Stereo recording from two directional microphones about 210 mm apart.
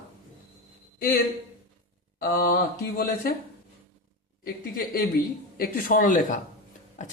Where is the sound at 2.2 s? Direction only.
50° left (ahead or behind).